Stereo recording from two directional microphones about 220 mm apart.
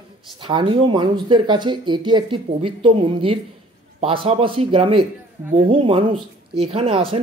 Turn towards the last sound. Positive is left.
turn(degrees=-25)  # may be behind; listen again after turning